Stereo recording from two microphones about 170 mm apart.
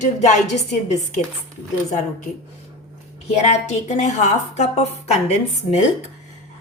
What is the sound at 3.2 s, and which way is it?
A woman's voice, 40° left (ahead or behind).